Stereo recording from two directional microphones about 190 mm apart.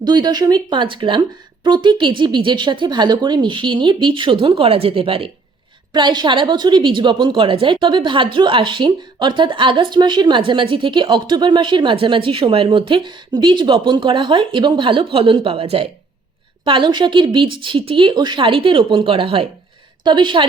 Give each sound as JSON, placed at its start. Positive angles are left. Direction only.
{"t": 0.0, "sound": "a woman's voice", "side_deg": -20}